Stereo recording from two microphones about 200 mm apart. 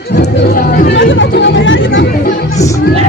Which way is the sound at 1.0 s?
70° left (ahead or behind).